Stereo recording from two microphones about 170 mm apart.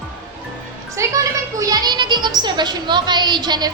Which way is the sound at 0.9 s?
20° right (ahead or behind).